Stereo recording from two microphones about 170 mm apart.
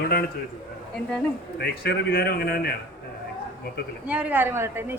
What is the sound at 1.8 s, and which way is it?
Speech, 65° left (ahead or behind).